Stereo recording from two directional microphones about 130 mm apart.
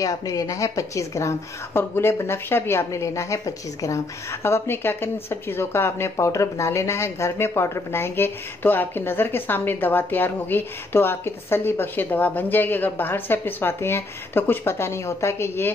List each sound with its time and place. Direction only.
0.0 s a woman's voice: 25° left (ahead or behind)